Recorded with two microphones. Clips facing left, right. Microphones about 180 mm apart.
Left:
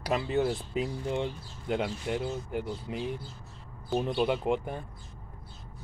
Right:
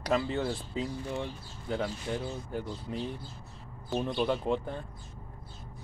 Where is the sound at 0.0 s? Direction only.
15° left (ahead or behind).